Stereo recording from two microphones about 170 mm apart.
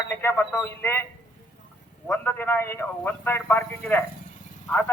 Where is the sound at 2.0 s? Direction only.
10° left (ahead or behind).